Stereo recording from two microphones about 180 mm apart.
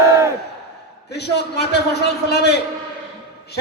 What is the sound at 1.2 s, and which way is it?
A man's voice, 70° left (ahead or behind).